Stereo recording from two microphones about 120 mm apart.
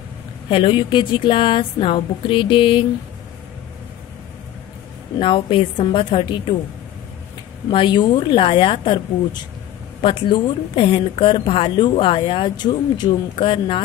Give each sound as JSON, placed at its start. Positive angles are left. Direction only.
{"t": 0.5, "sound": "a woman's voice", "side_deg": 50}
{"t": 5.2, "sound": "a woman's voice", "side_deg": 45}
{"t": 7.7, "sound": "a woman's voice", "side_deg": 40}